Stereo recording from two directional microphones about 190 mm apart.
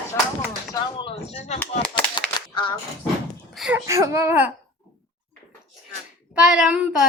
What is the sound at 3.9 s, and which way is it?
Speech, 15° right (ahead or behind).